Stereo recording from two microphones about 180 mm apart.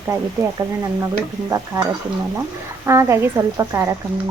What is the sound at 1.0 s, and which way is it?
Speech, 15° right (ahead or behind).